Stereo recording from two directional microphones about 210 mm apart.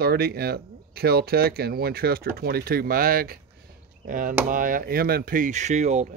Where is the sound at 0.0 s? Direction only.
45° right (ahead or behind).